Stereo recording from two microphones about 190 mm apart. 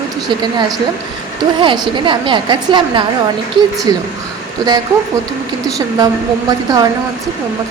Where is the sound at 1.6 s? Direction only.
25° right (ahead or behind).